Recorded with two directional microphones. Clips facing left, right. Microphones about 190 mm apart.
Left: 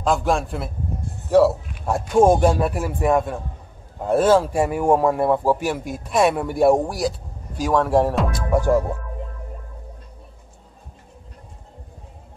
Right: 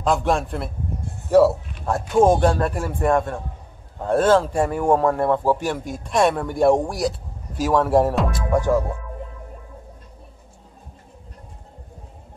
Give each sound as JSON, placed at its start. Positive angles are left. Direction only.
{"t": 0.0, "sound": "a man's voice", "side_deg": 0}